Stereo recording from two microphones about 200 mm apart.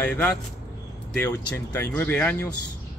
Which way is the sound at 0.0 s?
5° left (ahead or behind).